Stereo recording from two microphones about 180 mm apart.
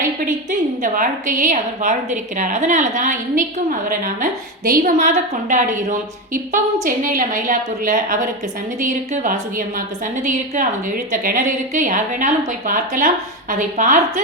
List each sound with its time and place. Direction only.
0.8 s a woman's voice: 50° right (ahead or behind)